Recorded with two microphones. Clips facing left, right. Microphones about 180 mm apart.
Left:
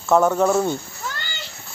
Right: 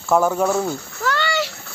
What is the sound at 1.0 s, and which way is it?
Splash, 80° right.